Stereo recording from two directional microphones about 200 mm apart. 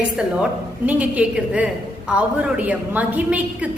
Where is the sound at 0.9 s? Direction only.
5° right (ahead or behind).